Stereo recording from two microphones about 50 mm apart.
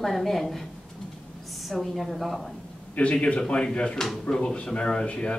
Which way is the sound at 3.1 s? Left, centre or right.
Centre.